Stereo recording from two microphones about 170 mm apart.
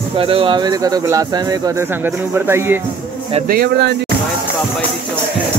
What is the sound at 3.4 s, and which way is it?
Speech, 65° right (ahead or behind).